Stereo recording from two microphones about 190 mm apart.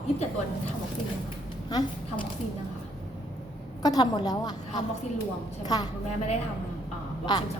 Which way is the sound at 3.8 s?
20° left (ahead or behind).